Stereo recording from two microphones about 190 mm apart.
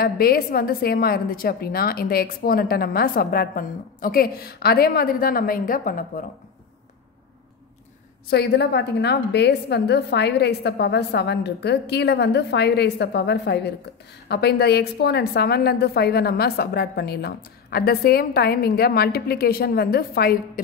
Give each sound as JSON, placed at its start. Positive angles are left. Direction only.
{"t": 0.0, "sound": "a woman's voice", "side_deg": 50}
{"t": 8.3, "sound": "a woman's voice", "side_deg": 60}